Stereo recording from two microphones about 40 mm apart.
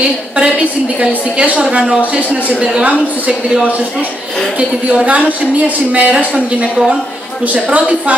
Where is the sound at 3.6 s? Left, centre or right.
Right.